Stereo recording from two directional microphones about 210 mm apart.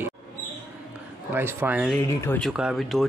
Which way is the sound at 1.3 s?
10° right (ahead or behind).